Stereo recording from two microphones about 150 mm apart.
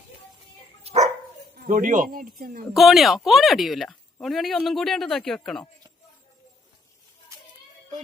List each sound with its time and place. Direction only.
0.9 s dog: 40° right (ahead or behind)
1.6 s speech: 60° right (ahead or behind)
2.7 s speech: centre (ahead or behind)